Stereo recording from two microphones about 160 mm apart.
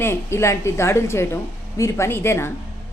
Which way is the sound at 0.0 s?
15° left (ahead or behind).